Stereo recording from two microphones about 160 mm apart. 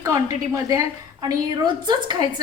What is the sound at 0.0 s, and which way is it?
A woman's voice, 20° right (ahead or behind).